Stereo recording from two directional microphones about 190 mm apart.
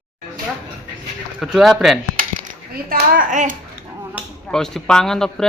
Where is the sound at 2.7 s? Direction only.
50° right (ahead or behind).